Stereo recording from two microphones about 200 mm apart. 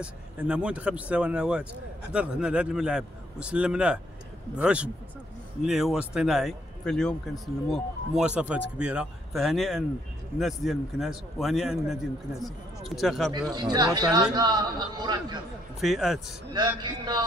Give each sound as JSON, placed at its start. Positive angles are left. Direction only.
{"t": 0.0, "sound": "speech", "side_deg": -5}
{"t": 13.3, "sound": "a man's voice", "side_deg": -20}
{"t": 15.8, "sound": "speech", "side_deg": 0}
{"t": 16.8, "sound": "a man's voice", "side_deg": -20}